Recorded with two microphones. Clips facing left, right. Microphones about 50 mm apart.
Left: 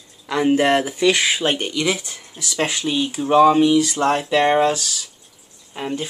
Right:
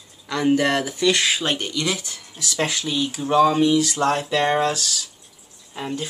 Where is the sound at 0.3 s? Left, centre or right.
Left.